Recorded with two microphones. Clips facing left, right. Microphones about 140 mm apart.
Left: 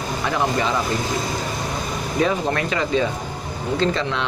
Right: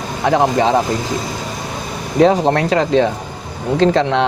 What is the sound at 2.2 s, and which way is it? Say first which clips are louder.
Speech: right 9 dB; 90° right.